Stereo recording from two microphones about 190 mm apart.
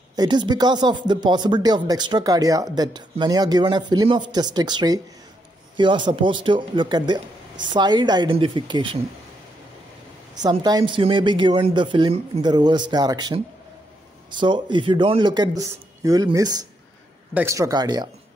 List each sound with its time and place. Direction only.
0.1 s speech: 20° right (ahead or behind)
10.4 s a man's voice: 20° right (ahead or behind)